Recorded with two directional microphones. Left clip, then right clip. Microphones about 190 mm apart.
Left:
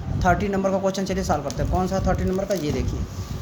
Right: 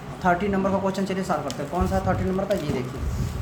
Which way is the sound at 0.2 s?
50° left (ahead or behind).